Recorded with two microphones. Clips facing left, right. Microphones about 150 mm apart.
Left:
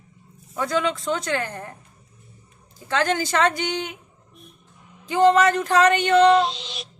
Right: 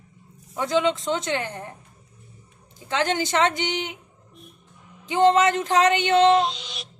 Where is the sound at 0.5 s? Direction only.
20° right (ahead or behind).